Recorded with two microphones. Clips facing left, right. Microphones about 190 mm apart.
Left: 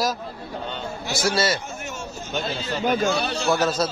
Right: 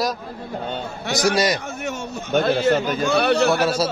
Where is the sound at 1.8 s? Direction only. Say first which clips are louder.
Right 5 dB; 60° right (ahead or behind).